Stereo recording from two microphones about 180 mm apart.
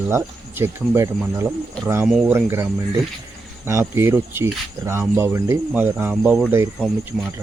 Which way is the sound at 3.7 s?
15° right (ahead or behind).